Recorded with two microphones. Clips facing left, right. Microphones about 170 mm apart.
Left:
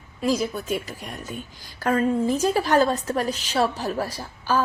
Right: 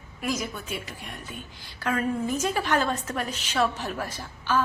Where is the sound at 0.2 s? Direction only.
30° left (ahead or behind).